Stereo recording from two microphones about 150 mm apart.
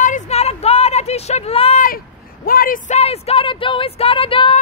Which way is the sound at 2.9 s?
45° left (ahead or behind).